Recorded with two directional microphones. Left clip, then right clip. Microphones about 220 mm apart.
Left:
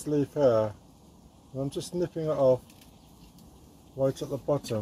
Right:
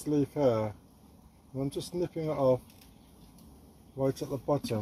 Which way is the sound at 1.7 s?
15° right (ahead or behind).